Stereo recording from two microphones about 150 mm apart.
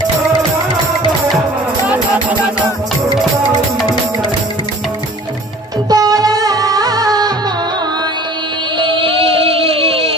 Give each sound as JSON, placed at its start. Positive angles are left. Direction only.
{"t": 5.9, "sound": "music", "side_deg": -25}
{"t": 8.7, "sound": "music", "side_deg": -35}